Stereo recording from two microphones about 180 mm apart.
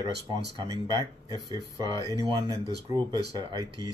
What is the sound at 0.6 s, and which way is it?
Speech, 20° right (ahead or behind).